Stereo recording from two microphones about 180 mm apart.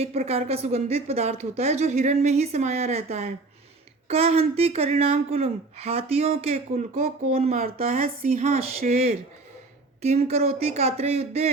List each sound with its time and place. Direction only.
0.0 s speech: 35° right (ahead or behind)
6.9 s speech: 50° right (ahead or behind)
7.3 s speech: 35° right (ahead or behind)
7.8 s speech: 50° right (ahead or behind)
8.9 s speech: 35° right (ahead or behind)